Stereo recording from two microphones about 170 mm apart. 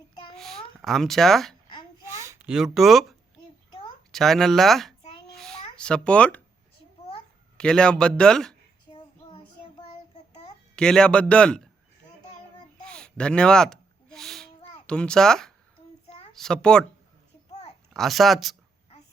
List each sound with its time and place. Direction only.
0.3 s cat: centre (ahead or behind)
2.0 s a sound: 15° right (ahead or behind)
2.7 s speech: centre (ahead or behind)
4.1 s a sound: centre (ahead or behind)
5.7 s speech: 5° left (ahead or behind)
7.5 s speech: 5° left (ahead or behind)
8.9 s child singing: 30° left (ahead or behind)
10.8 s speech: 5° left (ahead or behind)
12.8 s a sound: 5° left (ahead or behind)
16.3 s a child's voice: 5° left (ahead or behind)
17.5 s babbling: 40° left (ahead or behind)
17.9 s speech: centre (ahead or behind)